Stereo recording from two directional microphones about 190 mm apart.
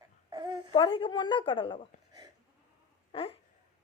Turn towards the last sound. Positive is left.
turn(degrees=30)  # may be behind; listen again after turning